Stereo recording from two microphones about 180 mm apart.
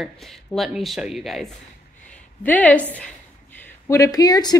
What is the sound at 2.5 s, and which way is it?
A woman's voice, 10° left (ahead or behind).